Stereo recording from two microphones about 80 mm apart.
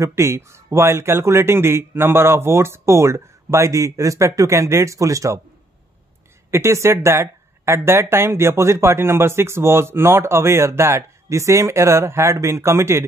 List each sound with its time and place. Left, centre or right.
0.0 s speech: right
6.5 s speech: right